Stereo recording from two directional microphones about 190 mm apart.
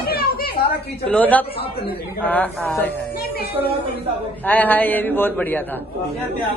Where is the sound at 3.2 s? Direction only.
55° left (ahead or behind).